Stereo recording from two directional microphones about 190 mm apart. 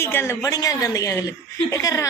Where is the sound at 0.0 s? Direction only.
15° left (ahead or behind).